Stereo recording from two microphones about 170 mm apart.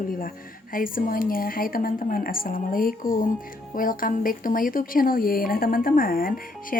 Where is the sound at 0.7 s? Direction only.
55° left (ahead or behind).